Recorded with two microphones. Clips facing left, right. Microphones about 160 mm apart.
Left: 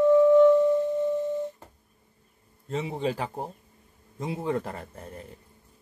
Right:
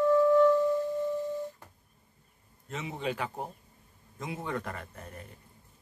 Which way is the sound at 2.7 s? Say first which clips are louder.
Left 6 dB; 35° left (ahead or behind).